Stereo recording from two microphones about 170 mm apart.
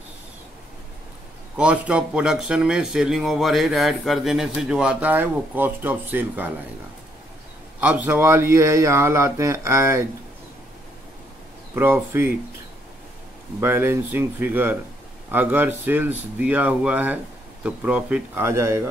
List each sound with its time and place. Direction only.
1.6 s speech: 5° right (ahead or behind)
7.8 s speech: 10° right (ahead or behind)
11.7 s speech: 15° right (ahead or behind)
13.6 s speech: 15° right (ahead or behind)